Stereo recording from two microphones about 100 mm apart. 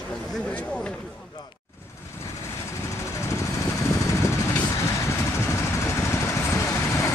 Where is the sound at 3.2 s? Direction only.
30° left (ahead or behind).